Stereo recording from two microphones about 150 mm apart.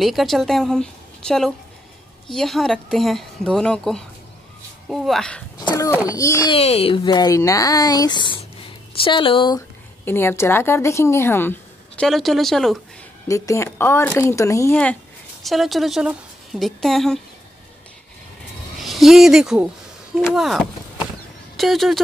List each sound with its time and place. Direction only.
0.0 s speech: centre (ahead or behind)
5.6 s a sound: 30° left (ahead or behind)
5.9 s speech: 20° left (ahead or behind)
6.5 s speech: 40° left (ahead or behind)
10.0 s a woman's voice: 15° left (ahead or behind)
12.0 s speech: centre (ahead or behind)
13.3 s speech: 20° left (ahead or behind)
15.4 s speech: centre (ahead or behind)
18.8 s speech: centre (ahead or behind)